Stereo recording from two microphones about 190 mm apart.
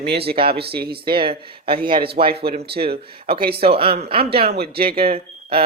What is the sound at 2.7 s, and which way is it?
Speech, 55° right (ahead or behind).